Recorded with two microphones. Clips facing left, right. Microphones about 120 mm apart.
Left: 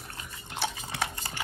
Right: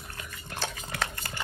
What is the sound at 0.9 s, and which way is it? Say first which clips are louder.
Dog: even; 25° left (ahead or behind).